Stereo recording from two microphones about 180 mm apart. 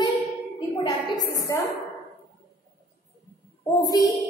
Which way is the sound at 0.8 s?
20° left (ahead or behind).